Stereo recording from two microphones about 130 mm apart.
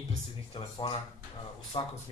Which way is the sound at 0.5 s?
40° left (ahead or behind).